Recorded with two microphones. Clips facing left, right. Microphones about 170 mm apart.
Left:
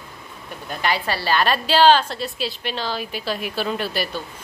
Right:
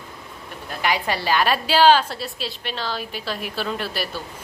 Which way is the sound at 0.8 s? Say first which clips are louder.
Even; 15° right (ahead or behind).